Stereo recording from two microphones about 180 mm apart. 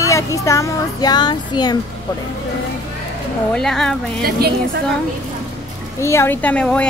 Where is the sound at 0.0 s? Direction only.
15° left (ahead or behind).